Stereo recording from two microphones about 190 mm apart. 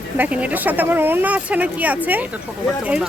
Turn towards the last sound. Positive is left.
turn(degrees=-5)  # may be behind; listen again after turning